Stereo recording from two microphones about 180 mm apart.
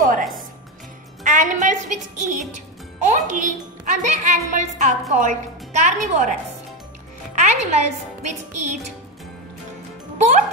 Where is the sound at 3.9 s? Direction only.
40° right (ahead or behind).